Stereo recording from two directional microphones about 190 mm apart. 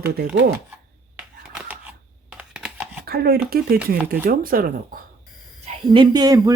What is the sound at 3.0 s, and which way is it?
Speech, 55° right (ahead or behind).